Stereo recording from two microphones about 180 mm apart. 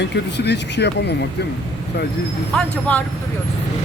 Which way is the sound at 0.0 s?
70° left (ahead or behind).